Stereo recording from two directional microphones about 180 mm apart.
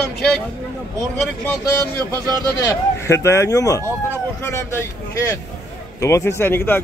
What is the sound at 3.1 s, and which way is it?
Speech, 15° left (ahead or behind).